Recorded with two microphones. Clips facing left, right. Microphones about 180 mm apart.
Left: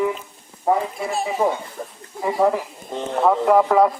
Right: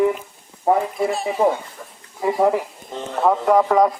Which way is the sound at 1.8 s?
40° left (ahead or behind).